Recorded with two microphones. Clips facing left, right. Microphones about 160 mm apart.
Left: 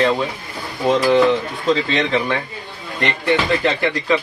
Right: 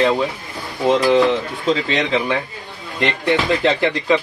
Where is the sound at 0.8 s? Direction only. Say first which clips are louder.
Even; 20° right (ahead or behind).